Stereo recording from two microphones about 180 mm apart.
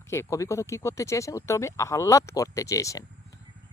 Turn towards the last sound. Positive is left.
turn(degrees=20)  # may be behind; listen again after turning